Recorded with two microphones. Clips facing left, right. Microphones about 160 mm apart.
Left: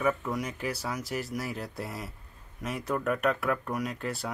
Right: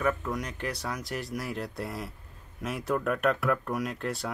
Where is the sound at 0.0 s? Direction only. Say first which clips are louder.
Left 1 dB; 5° left (ahead or behind).